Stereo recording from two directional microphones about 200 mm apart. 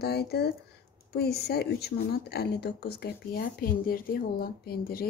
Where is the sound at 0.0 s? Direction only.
55° left (ahead or behind).